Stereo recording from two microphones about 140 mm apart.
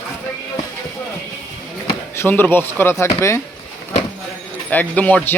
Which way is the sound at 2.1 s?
15° left (ahead or behind).